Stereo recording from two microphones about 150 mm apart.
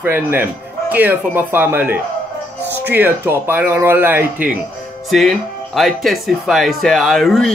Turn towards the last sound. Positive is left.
turn(degrees=0)  # may be behind; listen again after turning